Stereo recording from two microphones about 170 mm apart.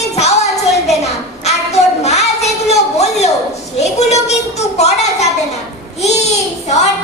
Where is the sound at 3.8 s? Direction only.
40° left (ahead or behind).